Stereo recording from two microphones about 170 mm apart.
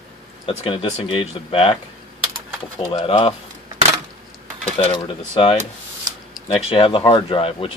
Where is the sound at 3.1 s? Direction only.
35° left (ahead or behind).